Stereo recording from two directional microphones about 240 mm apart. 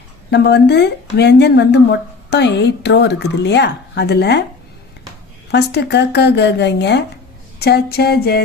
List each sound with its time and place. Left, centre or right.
0.3 s a woman's voice: left
5.5 s a woman's voice: left
7.6 s a sound: left